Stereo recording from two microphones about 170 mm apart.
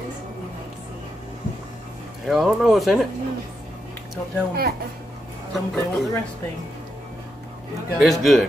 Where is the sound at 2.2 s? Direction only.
Centre (ahead or behind).